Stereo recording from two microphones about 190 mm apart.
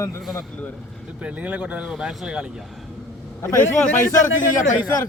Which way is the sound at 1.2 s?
10° right (ahead or behind).